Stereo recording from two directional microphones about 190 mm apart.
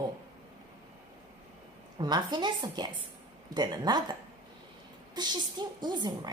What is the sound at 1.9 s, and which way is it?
A woman's voice, 20° right (ahead or behind).